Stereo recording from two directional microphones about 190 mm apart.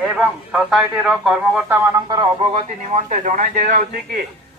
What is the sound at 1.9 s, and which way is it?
Speech, 20° right (ahead or behind).